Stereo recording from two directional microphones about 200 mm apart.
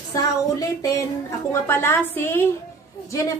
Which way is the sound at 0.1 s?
20° left (ahead or behind).